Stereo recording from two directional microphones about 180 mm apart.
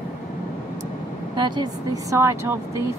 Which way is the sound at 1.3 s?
25° right (ahead or behind).